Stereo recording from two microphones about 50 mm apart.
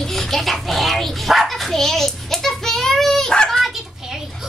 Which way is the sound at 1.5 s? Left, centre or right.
Centre.